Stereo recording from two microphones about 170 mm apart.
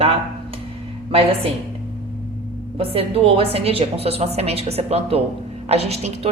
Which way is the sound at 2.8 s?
35° right (ahead or behind).